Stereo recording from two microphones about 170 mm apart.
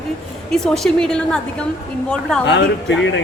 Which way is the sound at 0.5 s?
5° left (ahead or behind).